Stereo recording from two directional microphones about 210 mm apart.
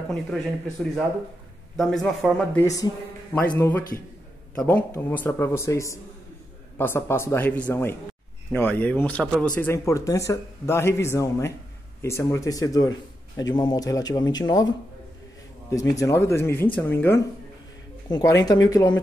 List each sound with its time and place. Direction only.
1.8 s speech: centre (ahead or behind)
2.6 s speech: 15° left (ahead or behind)
15.7 s speech: 15° left (ahead or behind)